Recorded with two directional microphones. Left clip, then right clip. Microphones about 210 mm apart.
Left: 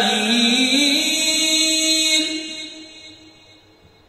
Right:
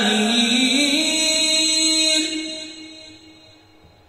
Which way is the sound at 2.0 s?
50° left (ahead or behind).